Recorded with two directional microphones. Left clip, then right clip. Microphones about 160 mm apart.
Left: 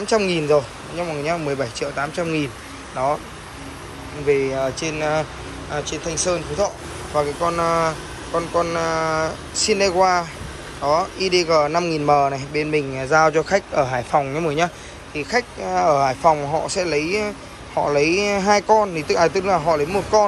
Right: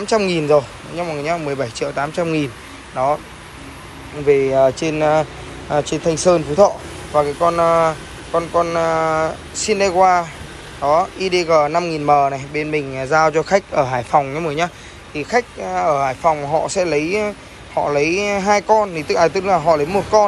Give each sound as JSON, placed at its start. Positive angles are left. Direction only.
{"t": 0.0, "sound": "a man's voice", "side_deg": 10}
{"t": 4.3, "sound": "a man's voice", "side_deg": 5}